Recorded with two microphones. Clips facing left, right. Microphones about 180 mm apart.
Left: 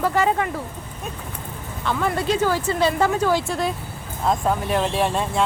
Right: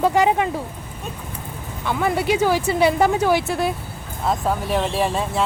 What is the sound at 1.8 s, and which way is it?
Speech, 10° right (ahead or behind).